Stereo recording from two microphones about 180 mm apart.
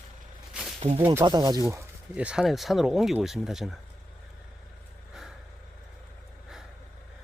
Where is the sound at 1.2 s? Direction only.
20° right (ahead or behind).